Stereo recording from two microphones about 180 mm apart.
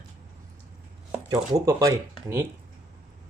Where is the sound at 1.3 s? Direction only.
20° right (ahead or behind).